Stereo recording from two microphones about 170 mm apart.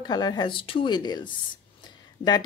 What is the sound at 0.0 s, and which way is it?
Speech, 25° left (ahead or behind).